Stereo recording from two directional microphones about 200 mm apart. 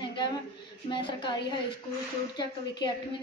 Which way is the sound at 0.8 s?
25° left (ahead or behind).